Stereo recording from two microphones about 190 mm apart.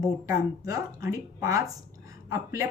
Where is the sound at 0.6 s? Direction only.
15° right (ahead or behind).